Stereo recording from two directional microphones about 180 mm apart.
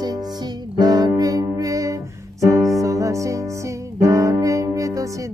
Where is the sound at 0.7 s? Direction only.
20° right (ahead or behind).